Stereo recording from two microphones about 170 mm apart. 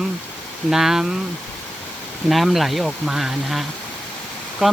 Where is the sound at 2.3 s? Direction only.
Centre (ahead or behind).